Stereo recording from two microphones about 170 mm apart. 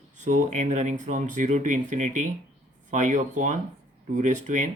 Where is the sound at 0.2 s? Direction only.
45° right (ahead or behind).